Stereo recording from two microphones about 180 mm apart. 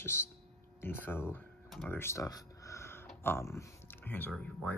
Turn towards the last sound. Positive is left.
turn(degrees=5)  # may be behind; listen again after turning